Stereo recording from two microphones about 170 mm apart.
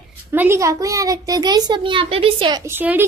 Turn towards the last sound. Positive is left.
turn(degrees=-10)  # may be behind; listen again after turning